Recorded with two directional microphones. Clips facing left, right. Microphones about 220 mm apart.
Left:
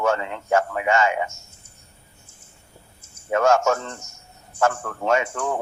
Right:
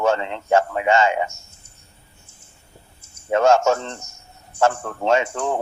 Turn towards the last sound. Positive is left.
turn(degrees=-30)  # may be behind; listen again after turning